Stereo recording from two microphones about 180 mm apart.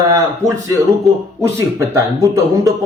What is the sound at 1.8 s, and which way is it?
Speech, 15° right (ahead or behind).